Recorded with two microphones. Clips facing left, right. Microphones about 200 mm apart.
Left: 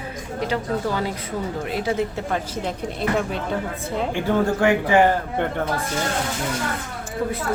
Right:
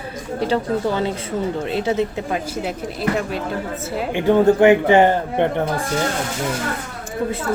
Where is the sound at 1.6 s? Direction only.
25° right (ahead or behind).